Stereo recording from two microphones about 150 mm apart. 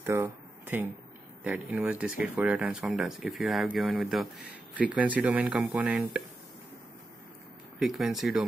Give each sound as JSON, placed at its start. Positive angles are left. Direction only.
{"t": 0.1, "sound": "speech", "side_deg": -15}
{"t": 1.4, "sound": "speech", "side_deg": -10}
{"t": 7.8, "sound": "speech", "side_deg": 0}